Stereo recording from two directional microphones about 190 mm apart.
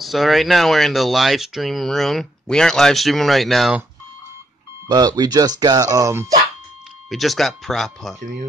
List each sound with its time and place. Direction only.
0.0 s speech: centre (ahead or behind)
4.8 s speech: 20° right (ahead or behind)
7.1 s speech: centre (ahead or behind)